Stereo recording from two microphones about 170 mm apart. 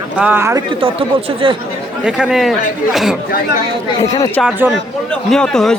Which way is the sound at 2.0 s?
5° right (ahead or behind).